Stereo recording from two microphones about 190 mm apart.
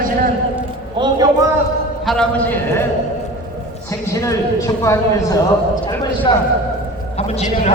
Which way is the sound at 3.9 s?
15° left (ahead or behind).